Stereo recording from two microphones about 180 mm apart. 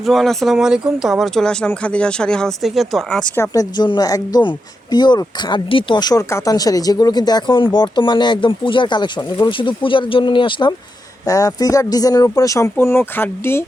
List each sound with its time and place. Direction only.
0.0 s speech: centre (ahead or behind)